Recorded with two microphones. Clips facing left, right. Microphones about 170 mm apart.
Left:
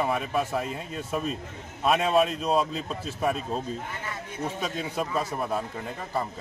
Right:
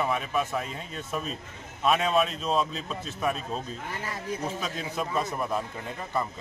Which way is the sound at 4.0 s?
35° right (ahead or behind).